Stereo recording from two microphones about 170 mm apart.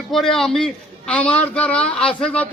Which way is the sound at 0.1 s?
Centre (ahead or behind).